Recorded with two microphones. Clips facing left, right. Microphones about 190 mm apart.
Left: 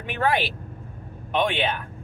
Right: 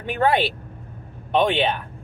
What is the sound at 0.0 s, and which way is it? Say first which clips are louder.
Speech: right 4 dB; 35° right (ahead or behind).